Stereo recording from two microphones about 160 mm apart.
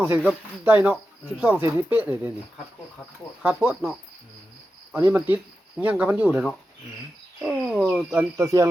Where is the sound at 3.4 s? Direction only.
10° right (ahead or behind).